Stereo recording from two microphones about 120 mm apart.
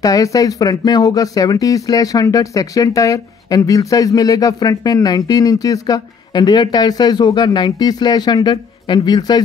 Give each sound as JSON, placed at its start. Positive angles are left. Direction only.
{"t": 0.0, "sound": "speech", "side_deg": 30}